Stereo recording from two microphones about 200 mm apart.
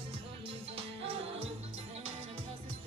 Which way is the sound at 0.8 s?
30° right (ahead or behind).